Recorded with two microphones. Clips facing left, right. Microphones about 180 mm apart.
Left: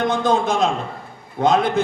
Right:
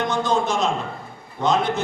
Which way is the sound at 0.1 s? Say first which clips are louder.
Left 3 dB; 55° left (ahead or behind).